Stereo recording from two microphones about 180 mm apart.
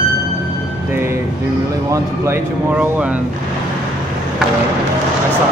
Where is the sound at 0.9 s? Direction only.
15° right (ahead or behind).